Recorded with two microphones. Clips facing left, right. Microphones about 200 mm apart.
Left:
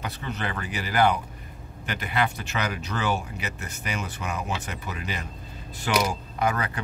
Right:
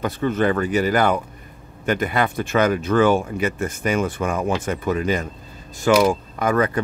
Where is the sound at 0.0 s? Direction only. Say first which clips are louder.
Right 12 dB; 50° right (ahead or behind).